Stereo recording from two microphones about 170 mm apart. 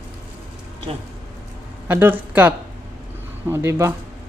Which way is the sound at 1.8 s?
10° right (ahead or behind).